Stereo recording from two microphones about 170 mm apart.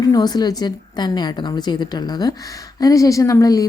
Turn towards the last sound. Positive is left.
turn(degrees=20)  # may be behind; listen again after turning